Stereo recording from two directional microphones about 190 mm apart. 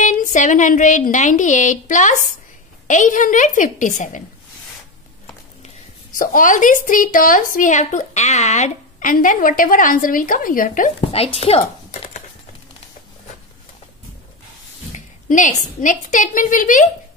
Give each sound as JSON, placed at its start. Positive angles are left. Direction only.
{"t": 0.0, "sound": "speech", "side_deg": 40}
{"t": 6.1, "sound": "speech", "side_deg": 45}
{"t": 11.1, "sound": "speech", "side_deg": 30}
{"t": 15.0, "sound": "a woman's voice", "side_deg": 40}